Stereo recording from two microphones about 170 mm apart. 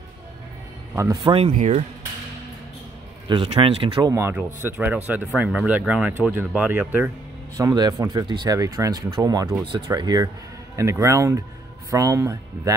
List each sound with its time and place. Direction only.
0.9 s speech: 20° right (ahead or behind)
1.3 s speech: 35° right (ahead or behind)
3.3 s speech: 30° right (ahead or behind)
4.1 s speech: 15° right (ahead or behind)
7.5 s speech: 20° right (ahead or behind)